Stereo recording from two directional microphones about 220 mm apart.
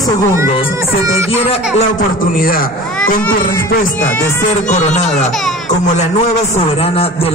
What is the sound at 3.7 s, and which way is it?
Speech, 40° left (ahead or behind).